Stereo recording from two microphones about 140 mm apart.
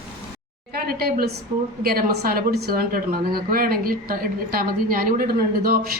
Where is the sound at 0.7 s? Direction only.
90° right.